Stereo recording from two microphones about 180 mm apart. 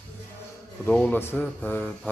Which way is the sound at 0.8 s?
10° left (ahead or behind).